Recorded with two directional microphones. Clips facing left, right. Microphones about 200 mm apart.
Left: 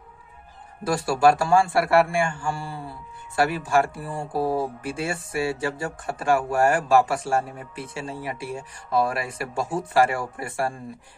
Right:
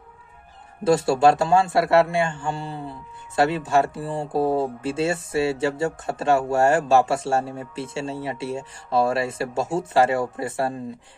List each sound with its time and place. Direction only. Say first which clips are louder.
0.8 s a man's voice: right 3 dB; 25° right (ahead or behind)